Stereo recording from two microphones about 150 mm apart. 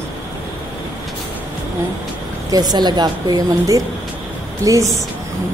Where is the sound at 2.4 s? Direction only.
25° right (ahead or behind).